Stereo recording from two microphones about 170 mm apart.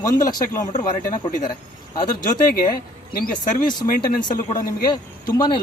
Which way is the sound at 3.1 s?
55° left (ahead or behind).